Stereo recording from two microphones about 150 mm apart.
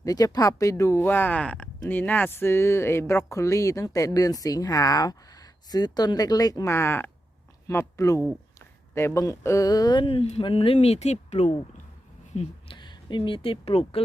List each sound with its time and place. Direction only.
0.0 s speech: 25° left (ahead or behind); by 11.5 s 50° left (ahead or behind)
12.3 s a sound: 45° left (ahead or behind)
12.7 s speech: 30° left (ahead or behind)